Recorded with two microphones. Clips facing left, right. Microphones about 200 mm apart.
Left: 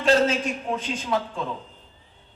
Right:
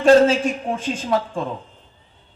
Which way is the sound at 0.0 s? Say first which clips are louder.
Right 7 dB; 50° right (ahead or behind).